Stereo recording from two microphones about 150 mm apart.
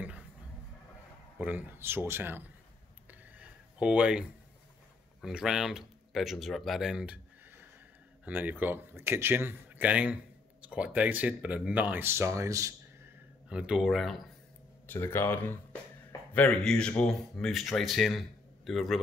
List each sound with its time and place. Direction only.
1.4 s speech: 10° right (ahead or behind)
3.1 s a sound: 10° right (ahead or behind)
5.2 s speech: 5° right (ahead or behind); by 13.1 s 20° right (ahead or behind)
13.5 s speech: 5° right (ahead or behind)
14.9 s speech: 15° left (ahead or behind); by 18.9 s centre (ahead or behind)